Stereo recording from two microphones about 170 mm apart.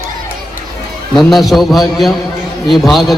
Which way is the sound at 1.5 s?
Centre (ahead or behind).